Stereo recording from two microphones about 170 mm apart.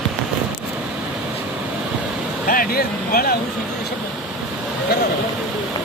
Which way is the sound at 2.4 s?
55° left (ahead or behind).